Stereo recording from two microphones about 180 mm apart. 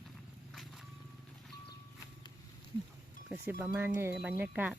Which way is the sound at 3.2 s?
5° right (ahead or behind).